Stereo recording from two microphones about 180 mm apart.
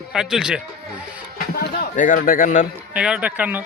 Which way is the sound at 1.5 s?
55° left (ahead or behind).